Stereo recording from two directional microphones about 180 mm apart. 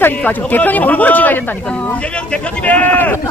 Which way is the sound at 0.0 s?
10° left (ahead or behind).